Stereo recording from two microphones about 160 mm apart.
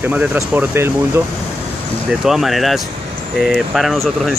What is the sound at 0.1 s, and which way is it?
Speech, 10° right (ahead or behind).